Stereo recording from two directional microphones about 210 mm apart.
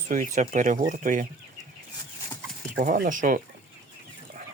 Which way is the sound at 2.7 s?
40° right (ahead or behind).